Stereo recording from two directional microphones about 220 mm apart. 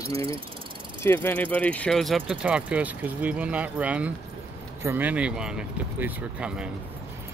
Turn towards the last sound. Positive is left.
turn(degrees=-5)  # may be behind; listen again after turning